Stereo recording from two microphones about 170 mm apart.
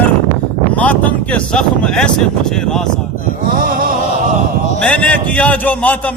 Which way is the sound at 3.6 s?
55° right (ahead or behind).